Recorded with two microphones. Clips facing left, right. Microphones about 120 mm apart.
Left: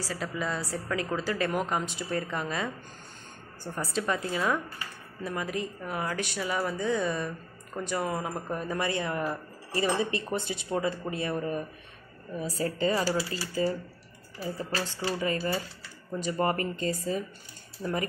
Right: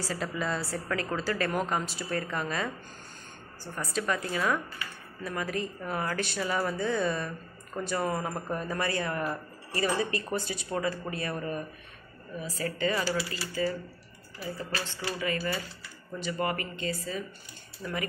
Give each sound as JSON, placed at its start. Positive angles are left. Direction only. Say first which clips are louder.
{"t": 0.0, "sound": "speech", "louder": "even", "side_deg": 10}
{"t": 3.9, "sound": "speech", "louder": "even", "side_deg": 25}
{"t": 8.1, "sound": "speech", "louder": "even", "side_deg": 5}
{"t": 9.8, "sound": "speech", "louder": "left 1 dB", "side_deg": 25}
{"t": 12.4, "sound": "speech", "louder": "left 3 dB", "side_deg": 35}
{"t": 17.8, "sound": "speech", "louder": "left 5 dB", "side_deg": 25}